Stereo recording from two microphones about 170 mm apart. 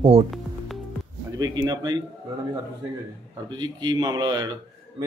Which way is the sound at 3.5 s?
25° right (ahead or behind).